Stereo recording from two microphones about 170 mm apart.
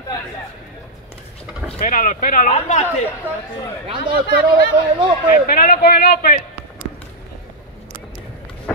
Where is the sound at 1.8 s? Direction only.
50° left (ahead or behind).